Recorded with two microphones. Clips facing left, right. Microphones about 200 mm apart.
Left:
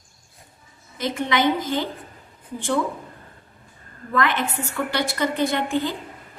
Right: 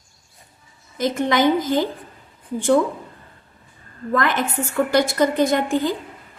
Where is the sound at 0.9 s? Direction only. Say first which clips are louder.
Right 4 dB; 45° right (ahead or behind).